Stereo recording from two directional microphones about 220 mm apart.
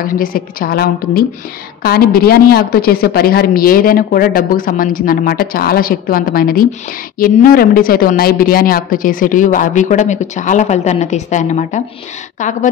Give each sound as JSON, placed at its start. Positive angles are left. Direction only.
{"t": 0.0, "sound": "a woman's voice", "side_deg": 40}